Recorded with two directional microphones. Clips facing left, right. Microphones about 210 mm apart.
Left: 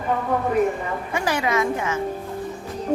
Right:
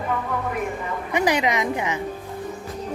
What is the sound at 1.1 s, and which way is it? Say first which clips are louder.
Speech: right 3 dB; 20° right (ahead or behind).